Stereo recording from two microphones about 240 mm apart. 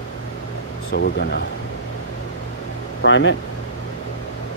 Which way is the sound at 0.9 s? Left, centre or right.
Left.